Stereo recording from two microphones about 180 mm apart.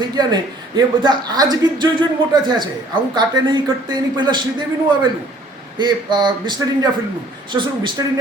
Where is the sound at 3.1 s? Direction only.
25° right (ahead or behind).